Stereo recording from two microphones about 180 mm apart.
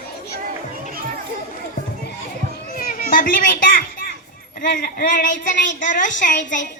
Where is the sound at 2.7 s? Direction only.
50° left (ahead or behind).